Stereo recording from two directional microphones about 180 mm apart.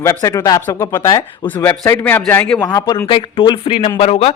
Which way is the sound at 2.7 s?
20° left (ahead or behind).